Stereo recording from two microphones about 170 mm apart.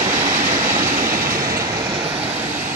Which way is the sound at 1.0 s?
55° right (ahead or behind).